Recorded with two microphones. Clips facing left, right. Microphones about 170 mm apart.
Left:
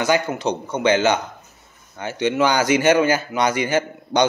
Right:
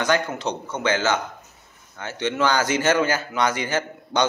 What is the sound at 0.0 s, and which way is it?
A man's voice, 10° left (ahead or behind).